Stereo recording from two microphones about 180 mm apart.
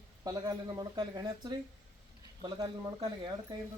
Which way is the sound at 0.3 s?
20° right (ahead or behind).